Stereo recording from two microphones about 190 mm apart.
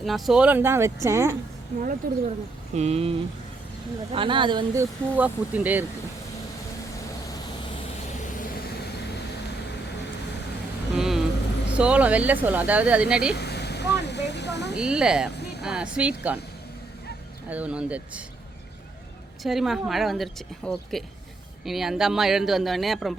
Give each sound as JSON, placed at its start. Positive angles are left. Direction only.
{"t": 0.0, "sound": "speech", "side_deg": 0}
{"t": 1.8, "sound": "speech", "side_deg": -45}
{"t": 2.7, "sound": "speech", "side_deg": -35}
{"t": 10.9, "sound": "vehicle", "side_deg": 0}
{"t": 11.7, "sound": "speech", "side_deg": -5}
{"t": 13.3, "sound": "speech", "side_deg": 60}
{"t": 14.8, "sound": "a woman's voice", "side_deg": -5}
{"t": 15.4, "sound": "a sound", "side_deg": 60}
{"t": 15.6, "sound": "speech", "side_deg": -5}
{"t": 17.5, "sound": "speech", "side_deg": -5}
{"t": 19.4, "sound": "a woman's voice", "side_deg": 0}